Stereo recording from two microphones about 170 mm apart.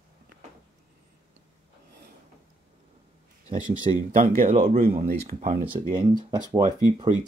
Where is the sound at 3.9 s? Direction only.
45° right (ahead or behind).